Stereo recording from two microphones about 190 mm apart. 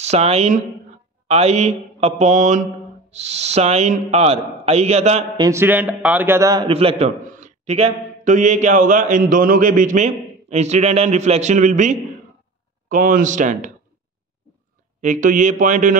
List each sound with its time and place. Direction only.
0.0 s a man's voice: 35° right (ahead or behind)
5.4 s a man's voice: 15° right (ahead or behind)
6.7 s a man's voice: 30° right (ahead or behind)
15.0 s a man's voice: 40° right (ahead or behind)